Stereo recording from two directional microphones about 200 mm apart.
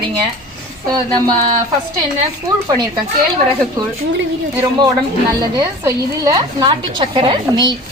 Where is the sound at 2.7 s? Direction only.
20° right (ahead or behind).